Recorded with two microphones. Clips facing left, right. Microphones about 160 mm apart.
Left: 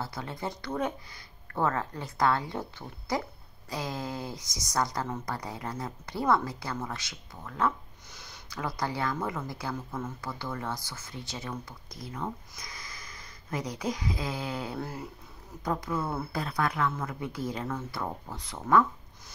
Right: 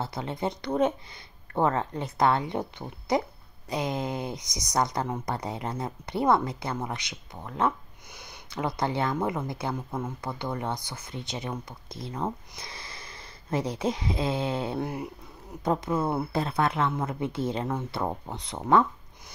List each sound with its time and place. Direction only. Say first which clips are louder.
0.0 s speech: right 5 dB; 20° right (ahead or behind)